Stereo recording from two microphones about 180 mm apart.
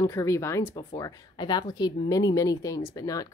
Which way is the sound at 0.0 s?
15° left (ahead or behind).